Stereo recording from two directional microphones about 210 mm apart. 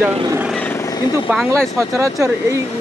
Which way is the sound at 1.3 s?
5° right (ahead or behind).